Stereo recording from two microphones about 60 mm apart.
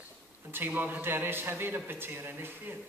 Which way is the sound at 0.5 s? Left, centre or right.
Right.